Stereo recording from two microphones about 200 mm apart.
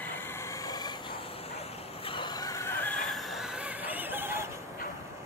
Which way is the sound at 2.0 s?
25° left (ahead or behind).